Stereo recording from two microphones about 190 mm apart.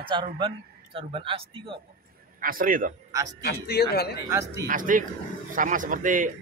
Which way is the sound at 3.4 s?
55° left (ahead or behind).